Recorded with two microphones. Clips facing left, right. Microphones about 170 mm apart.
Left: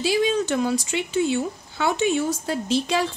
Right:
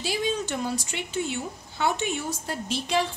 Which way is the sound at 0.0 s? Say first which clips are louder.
Left 7 dB; 90° left.